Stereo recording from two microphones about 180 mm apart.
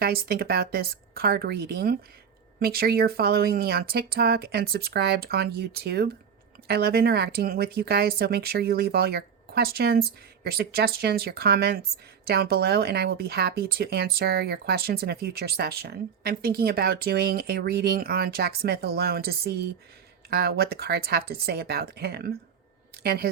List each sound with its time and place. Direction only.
0.0 s speech: 60° right (ahead or behind)